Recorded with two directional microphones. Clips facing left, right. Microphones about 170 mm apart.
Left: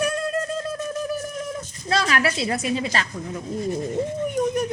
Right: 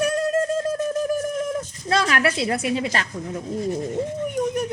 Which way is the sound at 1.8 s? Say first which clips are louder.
Right 1 dB; 55° right (ahead or behind).